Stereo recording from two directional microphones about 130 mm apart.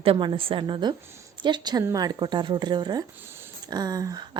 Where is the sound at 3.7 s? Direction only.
30° right (ahead or behind).